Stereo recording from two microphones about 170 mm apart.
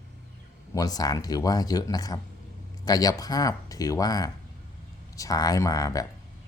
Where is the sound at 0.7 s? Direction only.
20° left (ahead or behind).